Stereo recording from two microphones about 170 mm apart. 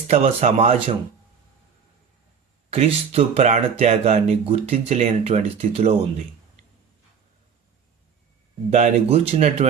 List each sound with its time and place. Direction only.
0.1 s speech: 40° right (ahead or behind)
2.7 s speech: 35° right (ahead or behind)
8.7 s speech: 40° right (ahead or behind)